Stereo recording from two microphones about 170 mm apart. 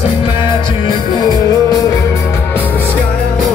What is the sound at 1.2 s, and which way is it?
Music, 25° left (ahead or behind).